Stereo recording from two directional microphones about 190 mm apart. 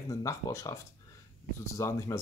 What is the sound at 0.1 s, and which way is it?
Speech, 15° left (ahead or behind).